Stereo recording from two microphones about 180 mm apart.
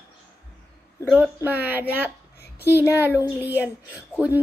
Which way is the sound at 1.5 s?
10° right (ahead or behind).